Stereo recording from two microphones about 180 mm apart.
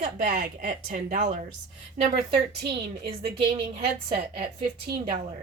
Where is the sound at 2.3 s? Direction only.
60° right (ahead or behind).